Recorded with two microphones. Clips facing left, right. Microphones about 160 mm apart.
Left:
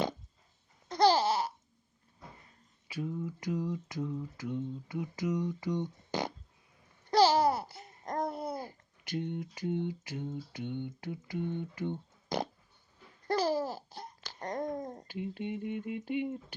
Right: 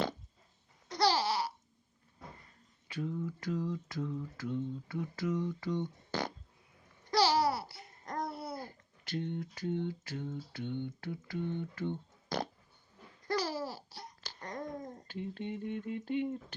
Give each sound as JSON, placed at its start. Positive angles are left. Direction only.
{"t": 0.9, "sound": "babbling", "side_deg": 45}
{"t": 2.8, "sound": "mantra", "side_deg": 10}
{"t": 7.1, "sound": "babbling", "side_deg": 45}
{"t": 7.4, "sound": "laughter", "side_deg": 45}
{"t": 8.5, "sound": "a sound", "side_deg": 15}
{"t": 13.2, "sound": "babbling", "side_deg": 40}
{"t": 15.0, "sound": "mantra", "side_deg": 10}